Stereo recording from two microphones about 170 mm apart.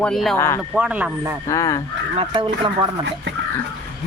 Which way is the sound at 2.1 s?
30° right (ahead or behind).